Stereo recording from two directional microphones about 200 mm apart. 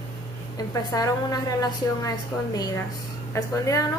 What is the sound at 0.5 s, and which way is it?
A woman's voice, 20° left (ahead or behind).